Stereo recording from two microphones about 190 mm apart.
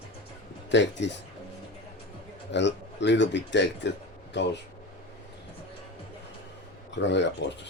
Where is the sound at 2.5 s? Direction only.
65° left (ahead or behind).